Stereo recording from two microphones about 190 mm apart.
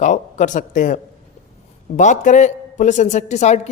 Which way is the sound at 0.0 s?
40° left (ahead or behind).